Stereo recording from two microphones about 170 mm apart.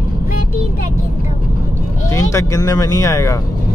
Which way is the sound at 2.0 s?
15° left (ahead or behind).